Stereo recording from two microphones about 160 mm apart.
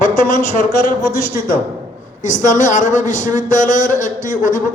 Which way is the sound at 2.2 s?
50° left (ahead or behind).